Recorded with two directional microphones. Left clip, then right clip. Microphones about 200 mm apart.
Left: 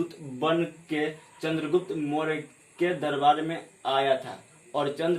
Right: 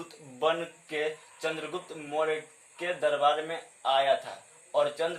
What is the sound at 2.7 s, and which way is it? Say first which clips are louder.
Speech: left 1 dB; 10° right (ahead or behind).